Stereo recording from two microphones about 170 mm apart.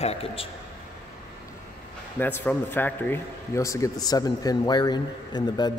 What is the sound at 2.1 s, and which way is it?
Speech, 10° left (ahead or behind).